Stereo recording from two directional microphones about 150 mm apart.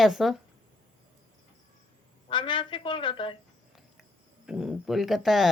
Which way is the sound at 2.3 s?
30° left (ahead or behind).